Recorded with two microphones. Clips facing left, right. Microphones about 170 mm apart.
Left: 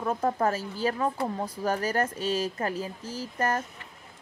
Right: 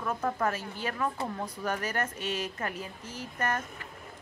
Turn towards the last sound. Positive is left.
turn(degrees=30)  # may be behind; listen again after turning